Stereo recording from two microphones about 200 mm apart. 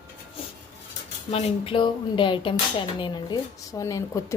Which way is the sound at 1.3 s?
30° left (ahead or behind).